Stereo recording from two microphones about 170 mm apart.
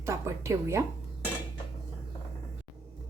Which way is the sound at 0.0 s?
15° right (ahead or behind).